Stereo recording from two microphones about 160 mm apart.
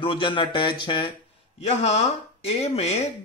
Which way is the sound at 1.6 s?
40° left (ahead or behind).